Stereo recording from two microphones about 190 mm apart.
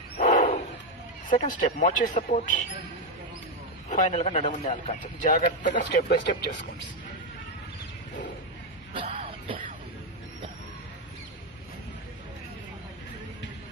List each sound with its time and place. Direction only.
0.2 s bird: 45° left (ahead or behind)
1.4 s speech: 40° left (ahead or behind)
3.8 s a man's voice: 40° left (ahead or behind)
8.9 s music: 30° right (ahead or behind)